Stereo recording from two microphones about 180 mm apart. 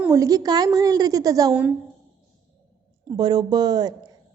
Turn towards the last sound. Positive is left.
turn(degrees=-20)  # may be behind; listen again after turning